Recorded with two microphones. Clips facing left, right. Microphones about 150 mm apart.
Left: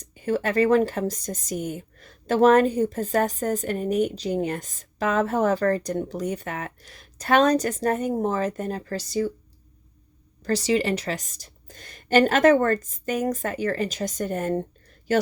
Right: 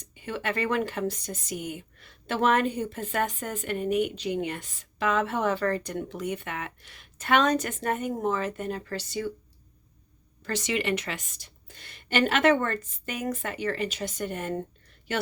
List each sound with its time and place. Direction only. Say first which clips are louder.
0.0 s speech: left 8 dB; 40° left (ahead or behind)
10.4 s speech: left 6 dB; 35° left (ahead or behind)